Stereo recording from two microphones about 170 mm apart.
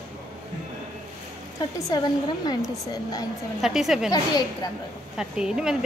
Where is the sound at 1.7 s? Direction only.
25° left (ahead or behind).